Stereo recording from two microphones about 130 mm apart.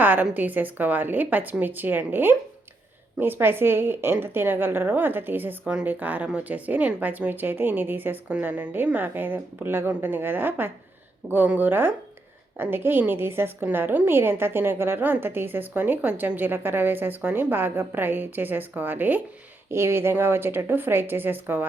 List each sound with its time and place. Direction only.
0.0 s a woman's voice: 15° right (ahead or behind)